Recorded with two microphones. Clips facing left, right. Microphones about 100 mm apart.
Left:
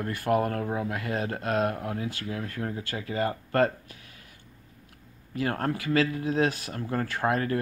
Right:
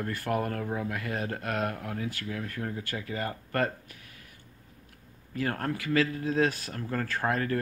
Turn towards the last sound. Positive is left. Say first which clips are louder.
# left 2 dB
turn(degrees=20)  # may be behind; listen again after turning